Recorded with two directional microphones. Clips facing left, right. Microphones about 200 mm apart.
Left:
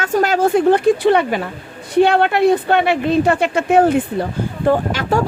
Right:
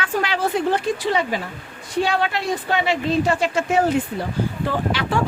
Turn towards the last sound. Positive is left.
turn(degrees=45)  # may be behind; listen again after turning